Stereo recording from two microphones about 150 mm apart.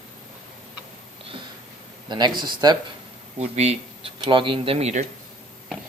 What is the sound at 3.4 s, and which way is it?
Speech, 45° right (ahead or behind).